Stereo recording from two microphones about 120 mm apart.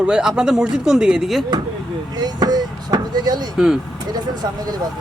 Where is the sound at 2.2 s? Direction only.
35° right (ahead or behind).